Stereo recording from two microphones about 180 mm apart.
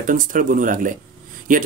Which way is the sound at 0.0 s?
50° right (ahead or behind).